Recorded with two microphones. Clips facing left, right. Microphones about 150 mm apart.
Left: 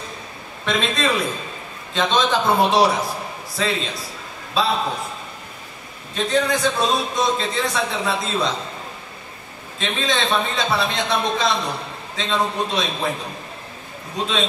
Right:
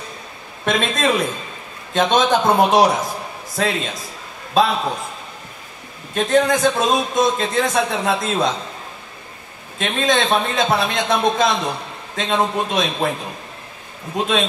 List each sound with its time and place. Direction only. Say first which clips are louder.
0.7 s a man's voice: right 3 dB; 45° right (ahead or behind)
6.1 s a man's voice: right 4 dB; 50° right (ahead or behind)
9.8 s a man's voice: right 4 dB; 50° right (ahead or behind)
14.1 s a man's voice: right 4 dB; 50° right (ahead or behind)